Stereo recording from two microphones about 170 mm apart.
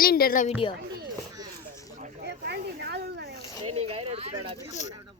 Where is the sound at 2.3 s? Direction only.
70° right (ahead or behind).